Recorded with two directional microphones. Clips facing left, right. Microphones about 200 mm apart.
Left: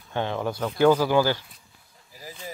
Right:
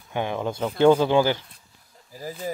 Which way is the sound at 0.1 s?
15° right (ahead or behind).